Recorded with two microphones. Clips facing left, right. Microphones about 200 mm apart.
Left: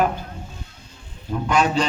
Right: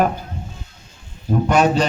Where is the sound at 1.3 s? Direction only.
40° right (ahead or behind).